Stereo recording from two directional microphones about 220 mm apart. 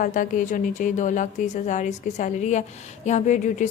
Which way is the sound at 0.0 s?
35° left (ahead or behind).